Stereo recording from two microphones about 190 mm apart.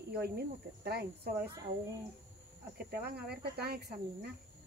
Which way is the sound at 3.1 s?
55° right (ahead or behind).